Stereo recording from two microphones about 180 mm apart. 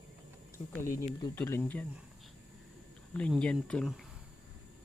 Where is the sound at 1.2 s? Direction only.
15° left (ahead or behind).